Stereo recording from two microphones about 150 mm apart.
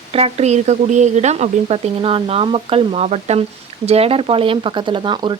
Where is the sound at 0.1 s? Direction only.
45° right (ahead or behind).